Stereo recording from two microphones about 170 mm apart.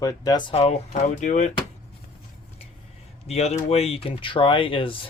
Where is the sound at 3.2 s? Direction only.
40° left (ahead or behind).